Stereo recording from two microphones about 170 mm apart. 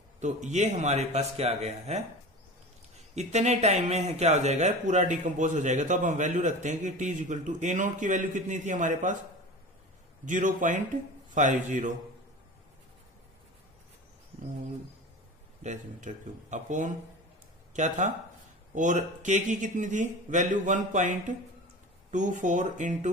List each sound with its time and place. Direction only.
0.2 s speech: 45° right (ahead or behind)
3.2 s speech: 40° right (ahead or behind)
10.2 s speech: 50° right (ahead or behind)
15.6 s speech: 45° right (ahead or behind)